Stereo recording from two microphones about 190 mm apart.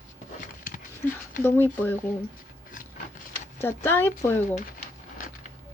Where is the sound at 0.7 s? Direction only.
45° left (ahead or behind).